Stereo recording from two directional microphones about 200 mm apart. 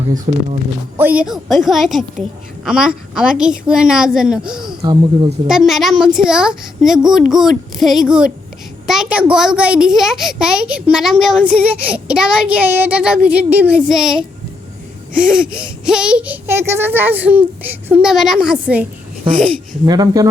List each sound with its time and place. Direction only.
0.9 s a child's voice: 10° right (ahead or behind)
4.8 s speech: 20° right (ahead or behind)
5.5 s a child's voice: centre (ahead or behind)
19.8 s speech: 20° right (ahead or behind)